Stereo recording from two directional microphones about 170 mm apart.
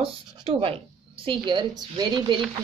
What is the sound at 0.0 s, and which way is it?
A woman's voice, 35° right (ahead or behind).